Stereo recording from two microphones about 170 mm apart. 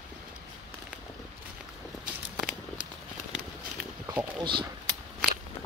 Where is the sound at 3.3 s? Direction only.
5° right (ahead or behind).